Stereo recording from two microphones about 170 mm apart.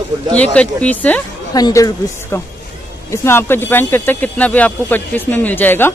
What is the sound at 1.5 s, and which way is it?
Speech, 20° left (ahead or behind).